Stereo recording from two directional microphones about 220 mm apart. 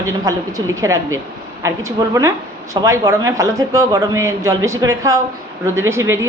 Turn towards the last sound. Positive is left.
turn(degrees=-10)  # may be behind; listen again after turning